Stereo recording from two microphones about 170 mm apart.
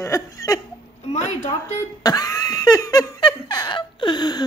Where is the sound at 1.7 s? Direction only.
20° left (ahead or behind).